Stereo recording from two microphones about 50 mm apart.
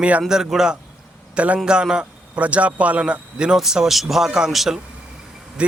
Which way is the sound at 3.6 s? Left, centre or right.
Centre.